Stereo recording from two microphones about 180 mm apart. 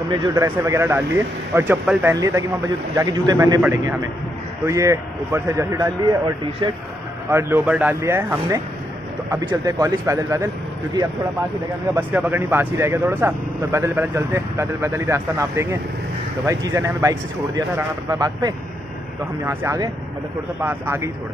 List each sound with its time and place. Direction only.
0.1 s speech: 20° right (ahead or behind)
11.9 s speech: 10° right (ahead or behind)